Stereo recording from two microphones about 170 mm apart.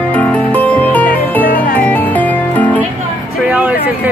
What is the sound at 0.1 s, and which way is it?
Music, 10° left (ahead or behind).